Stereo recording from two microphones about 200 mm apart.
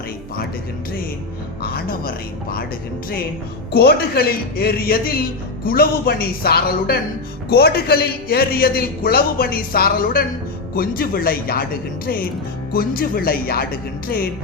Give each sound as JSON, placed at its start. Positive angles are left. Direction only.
{"t": 1.6, "sound": "a man's voice", "side_deg": 50}
{"t": 3.7, "sound": "a man's voice", "side_deg": 50}